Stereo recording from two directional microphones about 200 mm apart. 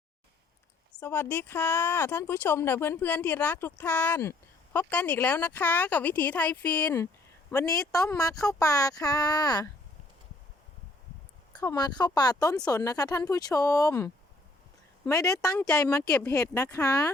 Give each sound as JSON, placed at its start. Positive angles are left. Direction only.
{"t": 0.9, "sound": "speech", "side_deg": 10}
{"t": 11.5, "sound": "speech", "side_deg": 20}
{"t": 16.0, "sound": "speech", "side_deg": 5}